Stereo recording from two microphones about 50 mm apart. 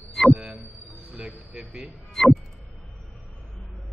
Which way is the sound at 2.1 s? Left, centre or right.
Centre.